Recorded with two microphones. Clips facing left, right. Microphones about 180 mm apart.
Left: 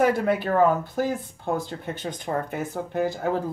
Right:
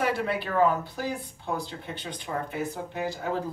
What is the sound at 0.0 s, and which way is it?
Speech, 45° left (ahead or behind).